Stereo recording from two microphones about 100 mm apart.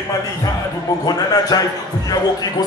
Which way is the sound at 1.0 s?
40° left (ahead or behind).